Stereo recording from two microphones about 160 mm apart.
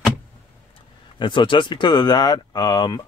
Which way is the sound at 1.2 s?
30° left (ahead or behind).